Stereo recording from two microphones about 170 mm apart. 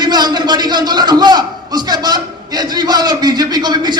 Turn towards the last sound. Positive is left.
turn(degrees=-25)  # may be behind; listen again after turning